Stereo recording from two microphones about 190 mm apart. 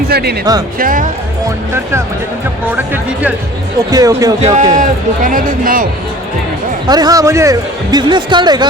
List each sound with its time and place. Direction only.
0.1 s speech: 55° right (ahead or behind)
0.8 s speech: 45° right (ahead or behind)
1.7 s speech: 15° right (ahead or behind)
3.8 s speech: 20° right (ahead or behind)
4.4 s speech: 35° right (ahead or behind)
6.8 s speech: 20° right (ahead or behind)